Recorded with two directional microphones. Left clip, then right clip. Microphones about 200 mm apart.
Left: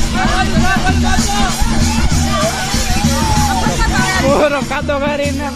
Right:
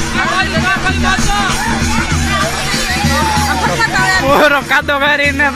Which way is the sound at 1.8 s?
55° left (ahead or behind).